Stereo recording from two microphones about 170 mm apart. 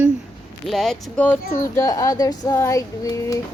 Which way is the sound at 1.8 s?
20° left (ahead or behind).